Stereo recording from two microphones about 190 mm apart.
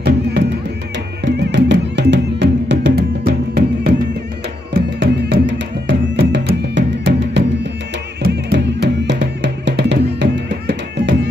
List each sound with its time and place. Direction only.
1.2 s music: 65° right (ahead or behind)